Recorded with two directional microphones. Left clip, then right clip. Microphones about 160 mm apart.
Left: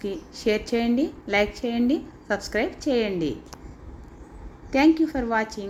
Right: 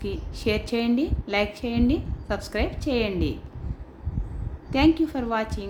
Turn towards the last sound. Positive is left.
turn(degrees=10)  # may be behind; listen again after turning